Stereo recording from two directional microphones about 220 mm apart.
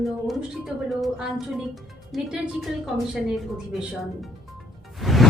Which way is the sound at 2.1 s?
Centre (ahead or behind).